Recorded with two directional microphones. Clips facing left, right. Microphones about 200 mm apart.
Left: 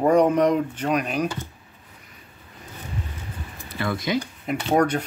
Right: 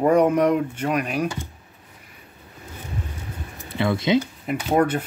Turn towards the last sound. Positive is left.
turn(degrees=-5)  # may be behind; listen again after turning